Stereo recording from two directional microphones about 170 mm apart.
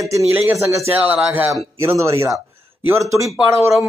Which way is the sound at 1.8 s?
15° right (ahead or behind).